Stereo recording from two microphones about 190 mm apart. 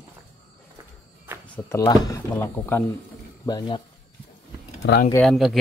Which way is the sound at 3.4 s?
25° left (ahead or behind).